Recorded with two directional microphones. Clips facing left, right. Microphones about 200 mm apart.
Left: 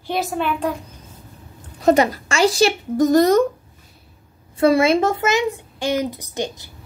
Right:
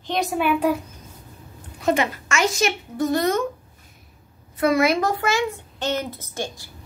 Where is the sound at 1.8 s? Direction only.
40° left (ahead or behind).